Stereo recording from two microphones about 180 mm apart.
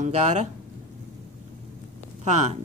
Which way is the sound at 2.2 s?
40° right (ahead or behind).